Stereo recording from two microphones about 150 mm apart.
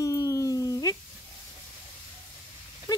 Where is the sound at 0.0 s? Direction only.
20° left (ahead or behind).